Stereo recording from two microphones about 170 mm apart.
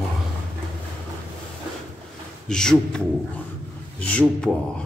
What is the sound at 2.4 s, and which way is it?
Speech, 5° left (ahead or behind).